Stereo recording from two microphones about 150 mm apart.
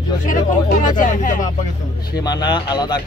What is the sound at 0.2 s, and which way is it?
Speech, 60° left (ahead or behind).